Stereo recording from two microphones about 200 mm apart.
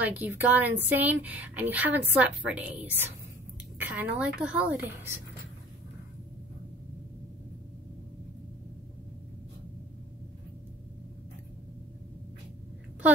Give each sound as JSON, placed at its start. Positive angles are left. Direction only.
{"t": 0.0, "sound": "speech", "side_deg": -10}